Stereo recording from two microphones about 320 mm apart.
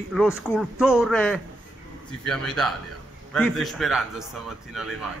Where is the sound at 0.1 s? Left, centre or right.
Centre.